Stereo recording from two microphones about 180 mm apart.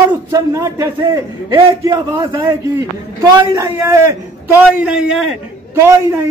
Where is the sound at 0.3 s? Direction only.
15° right (ahead or behind).